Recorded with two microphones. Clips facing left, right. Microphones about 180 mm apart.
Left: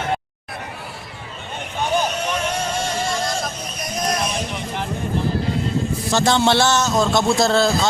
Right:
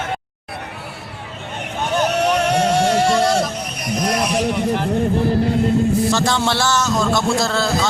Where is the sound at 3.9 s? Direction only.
75° right (ahead or behind).